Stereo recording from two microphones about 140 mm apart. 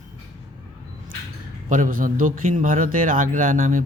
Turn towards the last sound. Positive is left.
turn(degrees=-65)  # may be behind; listen again after turning